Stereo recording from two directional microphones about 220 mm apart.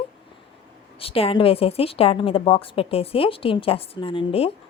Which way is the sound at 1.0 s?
25° left (ahead or behind).